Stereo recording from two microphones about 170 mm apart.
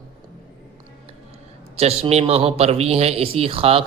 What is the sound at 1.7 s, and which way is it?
A man's voice, 35° right (ahead or behind).